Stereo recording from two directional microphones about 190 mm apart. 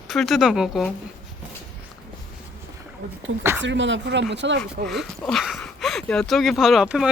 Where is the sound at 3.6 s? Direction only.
70° right (ahead or behind).